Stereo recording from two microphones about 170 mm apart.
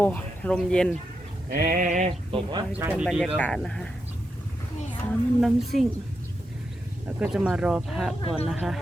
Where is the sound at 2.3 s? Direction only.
30° right (ahead or behind).